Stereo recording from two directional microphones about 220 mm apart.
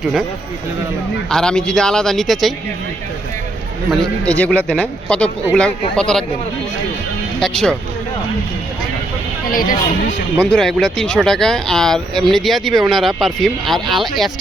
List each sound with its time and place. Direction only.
1.3 s speech: 5° left (ahead or behind)
4.3 s speech: 5° left (ahead or behind)
7.3 s speech: 5° left (ahead or behind)
9.5 s speech: 40° left (ahead or behind)
10.3 s speech: 5° left (ahead or behind)